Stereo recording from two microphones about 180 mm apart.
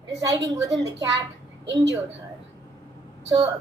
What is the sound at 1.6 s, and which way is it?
Speech, 80° right.